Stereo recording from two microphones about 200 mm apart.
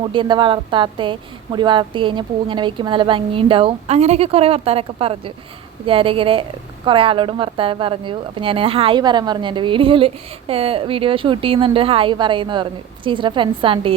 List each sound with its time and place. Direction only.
0.0 s speech: 25° right (ahead or behind)